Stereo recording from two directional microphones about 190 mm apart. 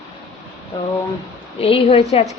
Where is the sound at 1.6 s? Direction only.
30° left (ahead or behind).